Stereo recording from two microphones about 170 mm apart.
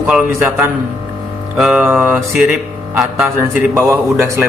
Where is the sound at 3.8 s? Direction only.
15° right (ahead or behind).